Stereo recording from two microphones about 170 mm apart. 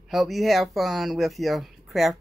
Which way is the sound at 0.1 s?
Centre (ahead or behind).